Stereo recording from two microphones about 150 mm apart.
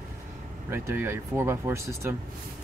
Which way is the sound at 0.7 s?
15° right (ahead or behind).